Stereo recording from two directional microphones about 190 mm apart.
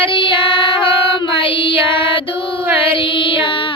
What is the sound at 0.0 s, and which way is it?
Child singing, 25° left (ahead or behind).